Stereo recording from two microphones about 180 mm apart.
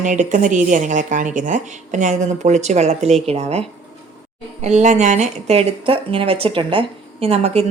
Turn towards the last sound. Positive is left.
turn(degrees=-35)  # may be behind; listen again after turning